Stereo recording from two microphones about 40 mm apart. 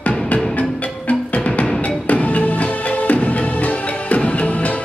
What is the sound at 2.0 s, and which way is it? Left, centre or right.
Music, left.